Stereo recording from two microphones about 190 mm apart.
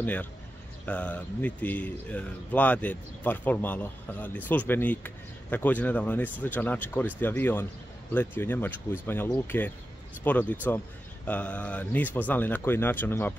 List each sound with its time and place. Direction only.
0.0 s speech: 10° left (ahead or behind)